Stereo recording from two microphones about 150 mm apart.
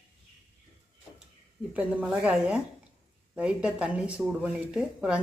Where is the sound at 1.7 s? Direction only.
10° right (ahead or behind).